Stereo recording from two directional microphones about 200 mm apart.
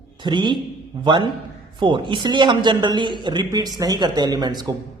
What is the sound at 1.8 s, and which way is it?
Speech, 25° right (ahead or behind).